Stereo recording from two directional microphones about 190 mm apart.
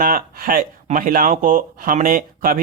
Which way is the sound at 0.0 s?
50° right (ahead or behind).